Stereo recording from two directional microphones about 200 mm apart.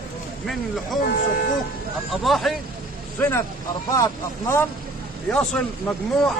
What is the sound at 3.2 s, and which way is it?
Speech, 10° left (ahead or behind).